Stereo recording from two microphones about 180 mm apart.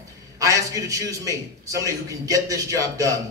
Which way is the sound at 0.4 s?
20° right (ahead or behind).